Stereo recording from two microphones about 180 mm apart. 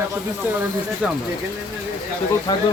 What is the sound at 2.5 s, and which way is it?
Speech, 20° left (ahead or behind).